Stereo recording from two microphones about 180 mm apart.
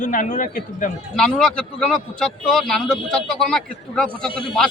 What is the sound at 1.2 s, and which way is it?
Speech, 5° left (ahead or behind).